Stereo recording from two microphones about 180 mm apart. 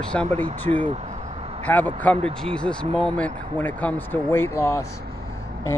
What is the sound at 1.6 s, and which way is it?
Speech, 10° left (ahead or behind).